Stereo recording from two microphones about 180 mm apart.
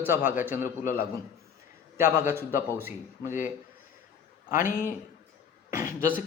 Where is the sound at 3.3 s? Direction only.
45° left (ahead or behind).